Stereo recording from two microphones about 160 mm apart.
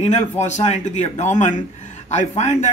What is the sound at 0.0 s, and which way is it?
A man's voice, 45° left (ahead or behind).